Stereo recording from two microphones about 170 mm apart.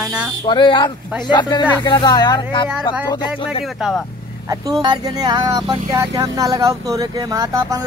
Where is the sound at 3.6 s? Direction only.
Centre (ahead or behind).